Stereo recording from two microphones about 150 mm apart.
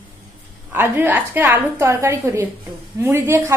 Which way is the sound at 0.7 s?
15° right (ahead or behind).